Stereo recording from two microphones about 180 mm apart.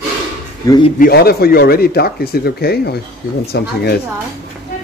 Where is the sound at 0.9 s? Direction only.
55° left (ahead or behind).